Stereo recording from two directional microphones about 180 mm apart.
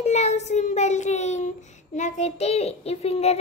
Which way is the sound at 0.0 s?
40° left (ahead or behind).